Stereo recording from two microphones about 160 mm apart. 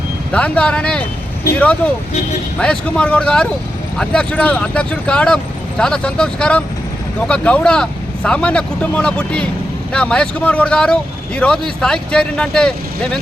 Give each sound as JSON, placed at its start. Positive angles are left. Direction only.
{"t": 0.3, "sound": "speech", "side_deg": 10}
{"t": 2.6, "sound": "speech", "side_deg": 5}